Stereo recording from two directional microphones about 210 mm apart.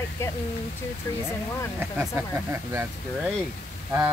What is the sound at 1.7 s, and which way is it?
Speech, 10° right (ahead or behind).